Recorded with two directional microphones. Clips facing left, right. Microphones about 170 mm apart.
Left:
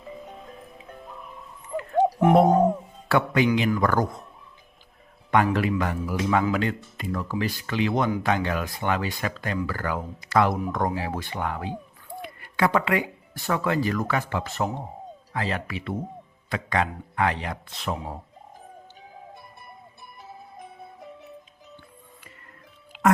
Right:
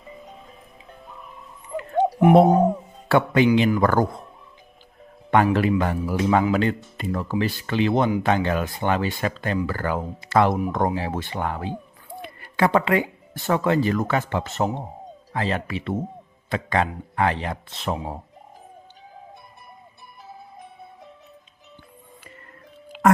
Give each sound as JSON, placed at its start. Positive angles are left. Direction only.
{"t": 0.9, "sound": "music", "side_deg": 0}
{"t": 2.5, "sound": "speech", "side_deg": -5}
{"t": 3.1, "sound": "speech", "side_deg": -25}
{"t": 5.3, "sound": "speech", "side_deg": -30}
{"t": 22.9, "sound": "music", "side_deg": -40}